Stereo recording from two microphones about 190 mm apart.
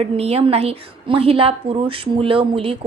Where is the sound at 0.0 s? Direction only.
30° right (ahead or behind).